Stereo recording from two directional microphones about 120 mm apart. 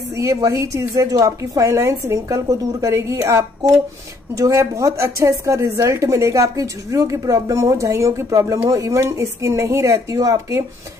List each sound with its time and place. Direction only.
0.1 s speech: 25° right (ahead or behind)